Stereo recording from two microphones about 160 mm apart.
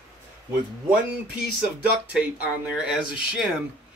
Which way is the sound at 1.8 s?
10° right (ahead or behind).